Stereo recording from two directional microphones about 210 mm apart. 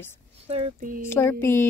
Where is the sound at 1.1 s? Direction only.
10° left (ahead or behind).